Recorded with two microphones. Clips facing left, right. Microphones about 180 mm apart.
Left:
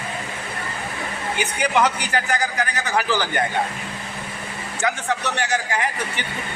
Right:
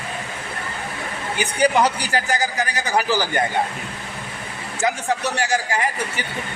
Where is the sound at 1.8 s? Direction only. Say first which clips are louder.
Right 1 dB; 35° right (ahead or behind).